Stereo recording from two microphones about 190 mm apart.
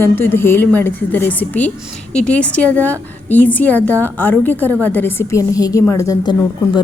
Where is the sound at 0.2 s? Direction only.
10° left (ahead or behind).